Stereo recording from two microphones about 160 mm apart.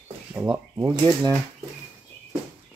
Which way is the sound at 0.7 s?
20° right (ahead or behind).